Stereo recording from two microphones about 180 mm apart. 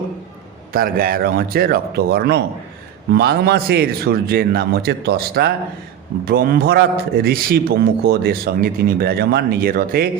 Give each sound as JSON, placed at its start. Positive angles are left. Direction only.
{"t": 0.7, "sound": "a man's voice", "side_deg": -55}